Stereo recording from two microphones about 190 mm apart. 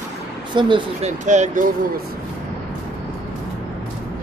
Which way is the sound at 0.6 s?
25° right (ahead or behind).